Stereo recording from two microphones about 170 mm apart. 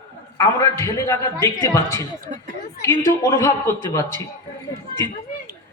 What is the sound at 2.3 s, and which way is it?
Speech, 40° right (ahead or behind).